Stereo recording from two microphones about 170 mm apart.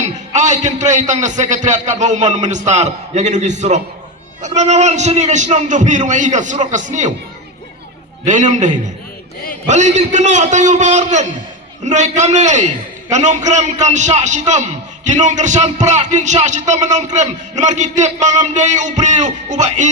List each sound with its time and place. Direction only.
0.0 s a man's voice: 45° right (ahead or behind)
8.2 s a man's voice: 45° right (ahead or behind)